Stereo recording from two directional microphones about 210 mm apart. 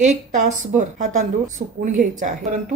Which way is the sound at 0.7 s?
40° right (ahead or behind).